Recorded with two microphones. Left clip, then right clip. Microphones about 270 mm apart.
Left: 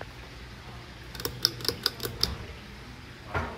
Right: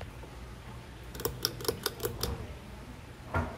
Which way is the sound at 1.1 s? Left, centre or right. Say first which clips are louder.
Left 5 dB; right.